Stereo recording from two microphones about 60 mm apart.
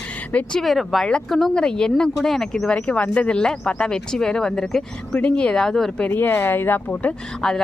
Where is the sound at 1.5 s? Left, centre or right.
Centre.